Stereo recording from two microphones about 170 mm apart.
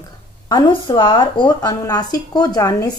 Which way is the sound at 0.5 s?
25° left (ahead or behind).